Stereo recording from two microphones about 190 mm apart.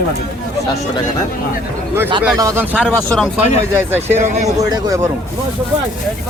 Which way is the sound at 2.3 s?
15° right (ahead or behind).